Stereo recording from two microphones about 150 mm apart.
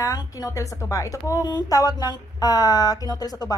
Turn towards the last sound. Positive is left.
turn(degrees=25)  # may be behind; listen again after turning